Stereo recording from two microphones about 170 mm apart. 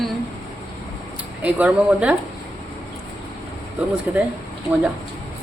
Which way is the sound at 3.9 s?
10° right (ahead or behind).